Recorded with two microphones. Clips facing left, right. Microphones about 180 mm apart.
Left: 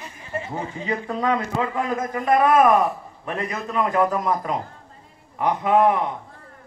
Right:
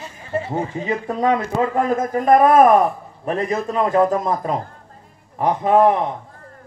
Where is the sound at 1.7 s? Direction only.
45° right (ahead or behind).